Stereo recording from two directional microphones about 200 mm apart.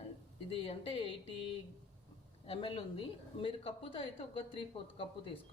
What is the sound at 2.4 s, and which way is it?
A woman's voice, 25° left (ahead or behind).